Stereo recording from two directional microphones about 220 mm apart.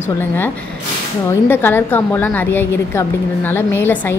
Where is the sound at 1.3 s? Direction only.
10° left (ahead or behind).